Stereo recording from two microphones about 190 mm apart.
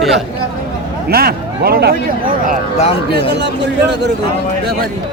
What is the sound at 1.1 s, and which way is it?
Speech, 55° right (ahead or behind).